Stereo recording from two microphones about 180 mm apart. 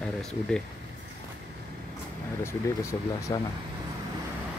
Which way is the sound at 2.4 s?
15° left (ahead or behind).